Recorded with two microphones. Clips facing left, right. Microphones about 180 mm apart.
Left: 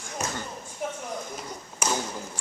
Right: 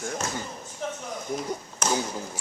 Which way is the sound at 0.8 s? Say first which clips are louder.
Even; 10° left (ahead or behind).